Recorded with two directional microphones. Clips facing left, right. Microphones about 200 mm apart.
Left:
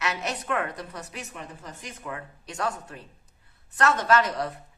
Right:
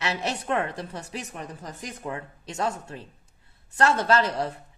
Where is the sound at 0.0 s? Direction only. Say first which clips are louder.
Right 2 dB; 30° right (ahead or behind).